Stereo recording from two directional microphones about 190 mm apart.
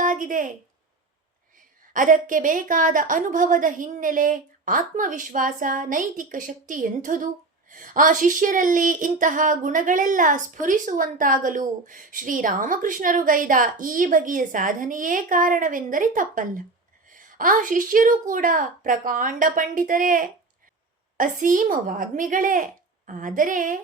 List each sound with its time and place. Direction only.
0.0 s a woman's voice: 45° right (ahead or behind)
1.9 s a woman's voice: 45° right (ahead or behind)